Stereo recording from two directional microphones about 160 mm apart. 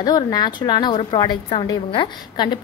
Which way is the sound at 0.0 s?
25° left (ahead or behind).